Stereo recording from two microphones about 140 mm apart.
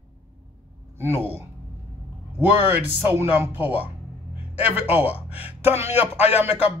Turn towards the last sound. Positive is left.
turn(degrees=-10)  # may be behind; listen again after turning